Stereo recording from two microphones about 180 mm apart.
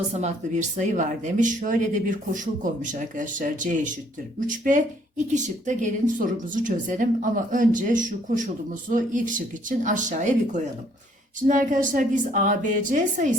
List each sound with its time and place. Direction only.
0.1 s speech: 40° right (ahead or behind)